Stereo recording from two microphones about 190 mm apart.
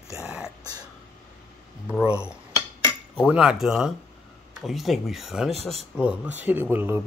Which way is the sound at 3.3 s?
5° right (ahead or behind).